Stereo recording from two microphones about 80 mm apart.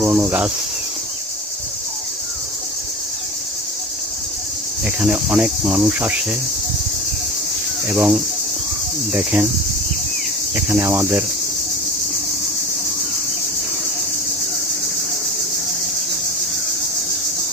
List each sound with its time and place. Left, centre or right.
0.0 s cricket: right
5.3 s cricket: centre
7.9 s speech: centre
10.5 s speech: right
10.8 s cricket: right